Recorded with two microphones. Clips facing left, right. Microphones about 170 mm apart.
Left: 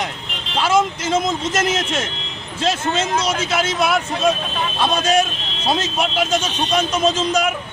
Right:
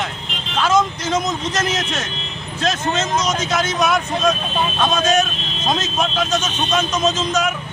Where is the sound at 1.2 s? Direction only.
25° left (ahead or behind).